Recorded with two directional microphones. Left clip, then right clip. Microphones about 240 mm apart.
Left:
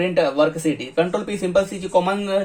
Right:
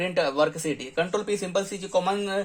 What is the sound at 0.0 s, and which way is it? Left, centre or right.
Speech, right.